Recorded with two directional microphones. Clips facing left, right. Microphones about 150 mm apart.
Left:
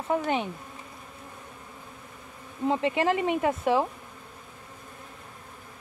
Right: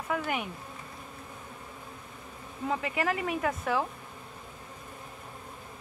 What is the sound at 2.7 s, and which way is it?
Speech, 25° left (ahead or behind).